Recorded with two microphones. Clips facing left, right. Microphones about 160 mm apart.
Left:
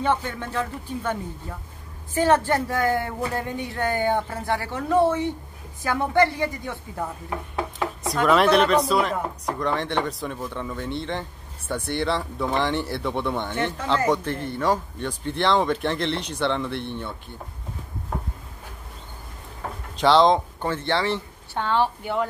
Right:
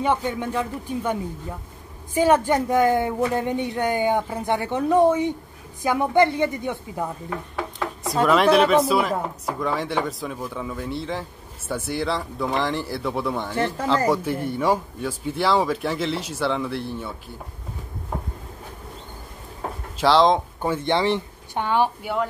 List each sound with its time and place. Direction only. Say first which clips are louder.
0.0 s speech: right 2 dB; 15° right (ahead or behind)
2.1 s a woman's voice: right 2 dB; 10° right (ahead or behind)
8.0 s speech: right 1 dB; centre (ahead or behind)
20.0 s speech: even; centre (ahead or behind)